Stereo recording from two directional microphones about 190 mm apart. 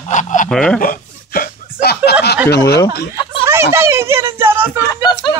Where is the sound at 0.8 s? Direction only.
50° left (ahead or behind).